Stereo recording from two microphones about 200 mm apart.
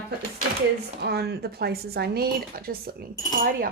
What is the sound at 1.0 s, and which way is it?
A woman's voice, 55° right (ahead or behind).